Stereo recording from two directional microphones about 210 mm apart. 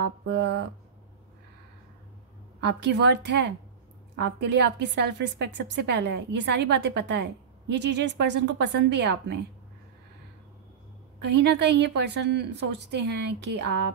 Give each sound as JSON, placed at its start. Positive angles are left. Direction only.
{"t": 0.3, "sound": "a woman's voice", "side_deg": -55}
{"t": 2.6, "sound": "a woman's voice", "side_deg": -55}
{"t": 11.2, "sound": "a woman's voice", "side_deg": -55}